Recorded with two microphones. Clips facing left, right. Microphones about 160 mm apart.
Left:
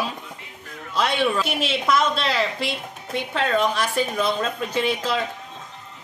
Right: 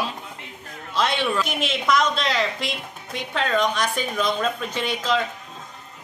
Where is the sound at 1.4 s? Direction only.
30° left (ahead or behind).